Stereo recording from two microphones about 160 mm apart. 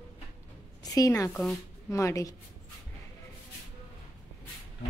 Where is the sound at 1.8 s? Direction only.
20° left (ahead or behind).